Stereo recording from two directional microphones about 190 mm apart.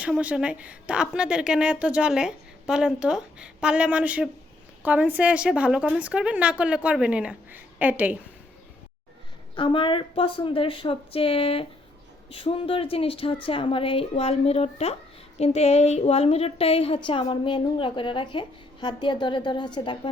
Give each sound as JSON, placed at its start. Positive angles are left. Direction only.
{"t": 0.0, "sound": "a woman's voice", "side_deg": -5}
{"t": 9.6, "sound": "a woman's voice", "side_deg": 25}